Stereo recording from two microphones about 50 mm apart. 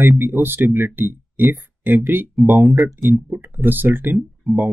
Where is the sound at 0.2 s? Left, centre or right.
Right.